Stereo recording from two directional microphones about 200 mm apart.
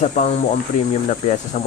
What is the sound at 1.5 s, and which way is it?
Speech, 40° left (ahead or behind).